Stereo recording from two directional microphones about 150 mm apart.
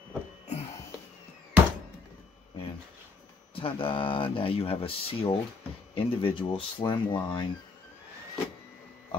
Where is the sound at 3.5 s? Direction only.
35° left (ahead or behind).